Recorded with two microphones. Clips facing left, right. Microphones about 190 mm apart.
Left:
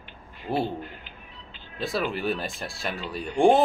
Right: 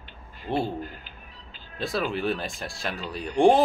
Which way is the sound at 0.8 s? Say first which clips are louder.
Right 2 dB; 40° right (ahead or behind).